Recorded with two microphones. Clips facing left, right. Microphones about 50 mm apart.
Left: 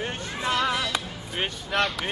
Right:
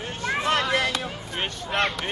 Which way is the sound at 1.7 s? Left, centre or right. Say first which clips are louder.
Right 1 dB; right.